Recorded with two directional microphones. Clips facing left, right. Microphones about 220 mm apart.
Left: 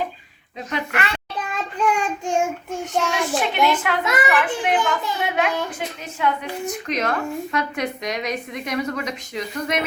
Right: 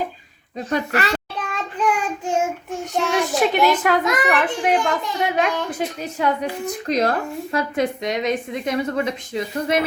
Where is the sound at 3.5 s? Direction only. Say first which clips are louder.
Right 3 dB; 40° right (ahead or behind).